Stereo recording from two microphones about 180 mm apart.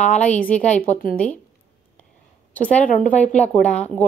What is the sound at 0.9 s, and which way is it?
Speech, 40° left (ahead or behind).